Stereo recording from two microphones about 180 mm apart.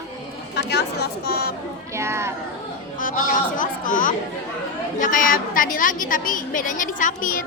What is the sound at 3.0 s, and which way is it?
A woman's voice, 50° left (ahead or behind).